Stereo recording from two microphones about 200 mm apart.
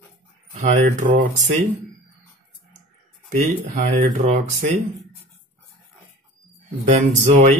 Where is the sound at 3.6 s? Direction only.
35° right (ahead or behind).